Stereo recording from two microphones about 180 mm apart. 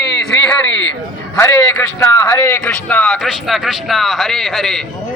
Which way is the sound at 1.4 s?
15° left (ahead or behind).